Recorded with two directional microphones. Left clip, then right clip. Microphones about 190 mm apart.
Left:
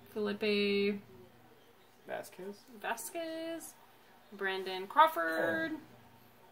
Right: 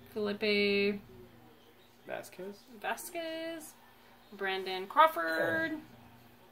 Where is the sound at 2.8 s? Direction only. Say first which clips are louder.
Right 1 dB; 10° left (ahead or behind).